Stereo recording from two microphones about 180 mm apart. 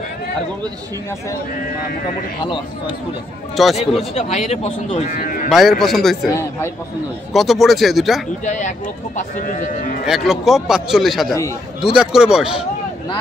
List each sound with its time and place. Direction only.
3.6 s a man's voice: centre (ahead or behind)
4.1 s speech: 40° left (ahead or behind)
5.5 s a man's voice: centre (ahead or behind)
7.3 s a man's voice: centre (ahead or behind)
8.5 s speech: 45° left (ahead or behind)
10.0 s a man's voice: centre (ahead or behind)